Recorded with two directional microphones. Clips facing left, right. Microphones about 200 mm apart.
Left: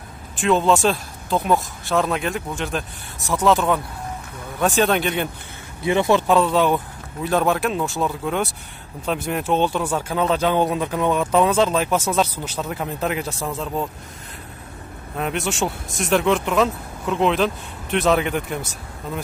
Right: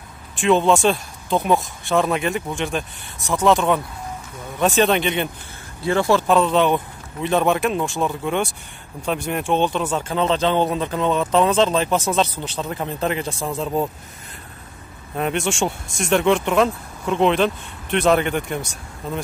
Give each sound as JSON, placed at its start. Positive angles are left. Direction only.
{"t": 0.4, "sound": "speech", "side_deg": 0}
{"t": 5.9, "sound": "speech", "side_deg": 20}
{"t": 6.2, "sound": "speech", "side_deg": 10}
{"t": 13.3, "sound": "speech", "side_deg": -10}
{"t": 15.1, "sound": "speech", "side_deg": 0}